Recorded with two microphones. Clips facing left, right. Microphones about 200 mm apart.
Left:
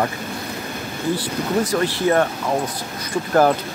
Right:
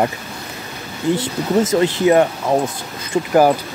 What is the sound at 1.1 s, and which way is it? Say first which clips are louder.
Speech: right 4 dB; 20° right (ahead or behind).